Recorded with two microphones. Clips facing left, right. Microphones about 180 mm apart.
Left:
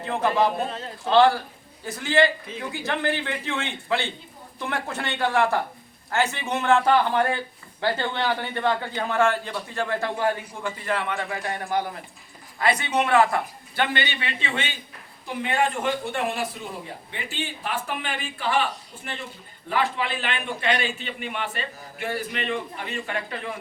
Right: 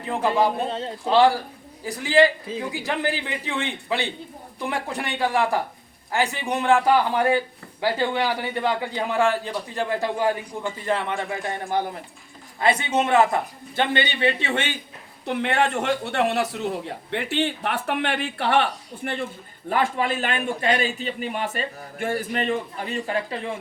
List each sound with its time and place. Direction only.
0.7 s a man's voice: 30° right (ahead or behind)
1.0 s a man's voice: 10° right (ahead or behind)
14.4 s speech: 50° right (ahead or behind)
15.3 s speech: 70° right (ahead or behind)
19.7 s a man's voice: 45° right (ahead or behind); by 23.6 s 30° right (ahead or behind)